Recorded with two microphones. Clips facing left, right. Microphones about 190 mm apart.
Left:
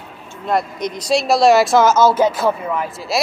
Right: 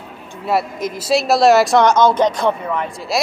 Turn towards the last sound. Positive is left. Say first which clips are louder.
# even
turn(degrees=0)  # may be behind; listen again after turning